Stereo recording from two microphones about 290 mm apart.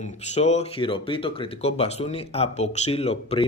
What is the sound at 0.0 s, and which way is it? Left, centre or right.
Speech, left.